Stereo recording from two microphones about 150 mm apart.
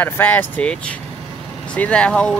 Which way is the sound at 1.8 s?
10° left (ahead or behind).